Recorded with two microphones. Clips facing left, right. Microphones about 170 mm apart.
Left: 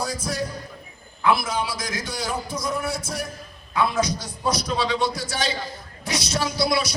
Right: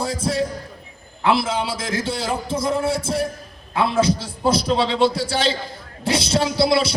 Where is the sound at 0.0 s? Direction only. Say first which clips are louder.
Right 5 dB; 25° right (ahead or behind).